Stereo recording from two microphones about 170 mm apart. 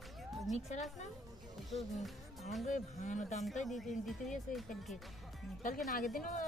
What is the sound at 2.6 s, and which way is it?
Speech, 45° left (ahead or behind).